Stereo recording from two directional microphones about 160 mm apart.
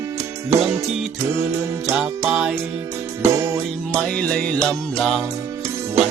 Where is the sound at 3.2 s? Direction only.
20° right (ahead or behind).